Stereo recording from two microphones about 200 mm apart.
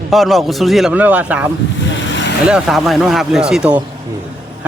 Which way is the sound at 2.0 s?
65° left (ahead or behind).